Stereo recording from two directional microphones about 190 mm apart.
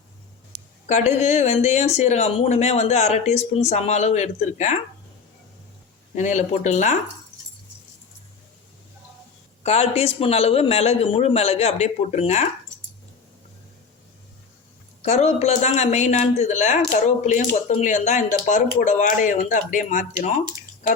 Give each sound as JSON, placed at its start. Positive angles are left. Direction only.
{"t": 0.5, "sound": "a sound", "side_deg": -60}
{"t": 0.9, "sound": "speech", "side_deg": 35}
{"t": 6.1, "sound": "speech", "side_deg": 40}
{"t": 9.6, "sound": "speech", "side_deg": 35}
{"t": 15.0, "sound": "speech", "side_deg": 35}